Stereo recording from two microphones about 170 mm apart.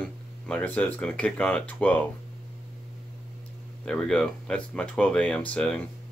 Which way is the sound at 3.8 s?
5° left (ahead or behind).